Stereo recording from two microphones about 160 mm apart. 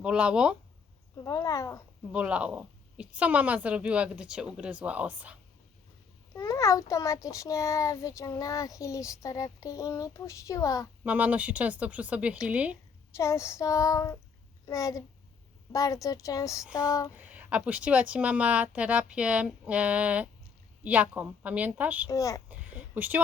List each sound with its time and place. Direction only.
0.0 s speech: 5° right (ahead or behind)
1.2 s a child's voice: 20° left (ahead or behind)
2.1 s a woman's voice: 5° right (ahead or behind)
6.3 s a child's voice: 20° left (ahead or behind)
11.0 s a woman's voice: 10° right (ahead or behind)
13.1 s a child's voice: 15° left (ahead or behind)
17.2 s a woman's voice: 10° right (ahead or behind)
22.1 s a child's voice: 20° left (ahead or behind)
22.4 s a sound: 10° right (ahead or behind)